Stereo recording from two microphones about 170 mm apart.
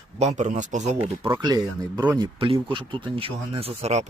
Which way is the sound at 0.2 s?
45° right (ahead or behind).